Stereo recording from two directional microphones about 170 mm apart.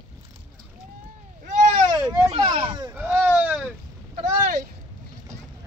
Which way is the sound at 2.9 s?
10° right (ahead or behind).